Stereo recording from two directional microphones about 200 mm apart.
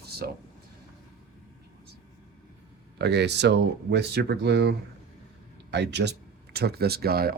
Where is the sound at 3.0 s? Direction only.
55° right (ahead or behind).